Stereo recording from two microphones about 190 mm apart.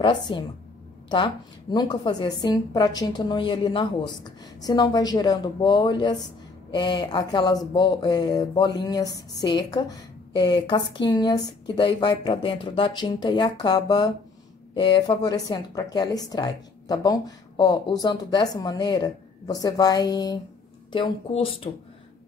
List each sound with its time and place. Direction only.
0.0 s a woman's voice: 25° left (ahead or behind)